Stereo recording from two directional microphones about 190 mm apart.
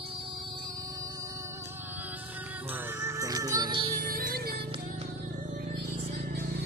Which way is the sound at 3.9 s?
45° right (ahead or behind).